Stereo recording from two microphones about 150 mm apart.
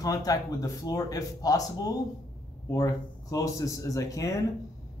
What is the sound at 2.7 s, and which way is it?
Speech, 20° left (ahead or behind).